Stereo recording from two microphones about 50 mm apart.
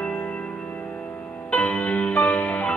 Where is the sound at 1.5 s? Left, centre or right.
Left.